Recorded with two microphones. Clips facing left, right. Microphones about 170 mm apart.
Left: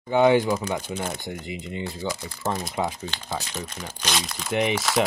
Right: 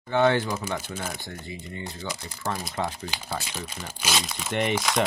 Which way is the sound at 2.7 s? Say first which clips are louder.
Left 3 dB; 15° left (ahead or behind).